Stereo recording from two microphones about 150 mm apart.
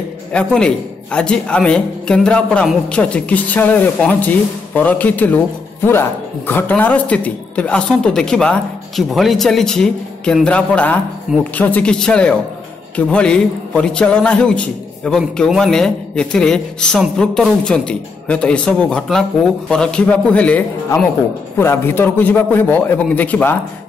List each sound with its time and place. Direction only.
0.3 s a man's voice: 5° left (ahead or behind)